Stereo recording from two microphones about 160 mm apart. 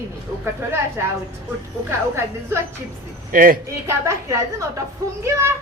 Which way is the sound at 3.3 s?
60° right (ahead or behind).